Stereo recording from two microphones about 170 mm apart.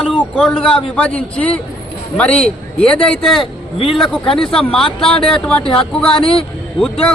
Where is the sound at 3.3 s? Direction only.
35° left (ahead or behind).